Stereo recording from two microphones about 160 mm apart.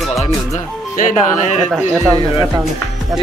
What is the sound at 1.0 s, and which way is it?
Speech, 55° left (ahead or behind).